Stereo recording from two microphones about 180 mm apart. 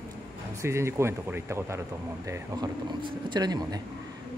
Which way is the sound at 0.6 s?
15° right (ahead or behind).